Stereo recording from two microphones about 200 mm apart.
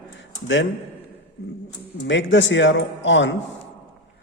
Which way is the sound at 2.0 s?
65° left (ahead or behind).